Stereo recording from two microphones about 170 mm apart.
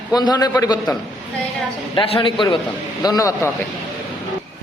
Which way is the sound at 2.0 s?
30° left (ahead or behind).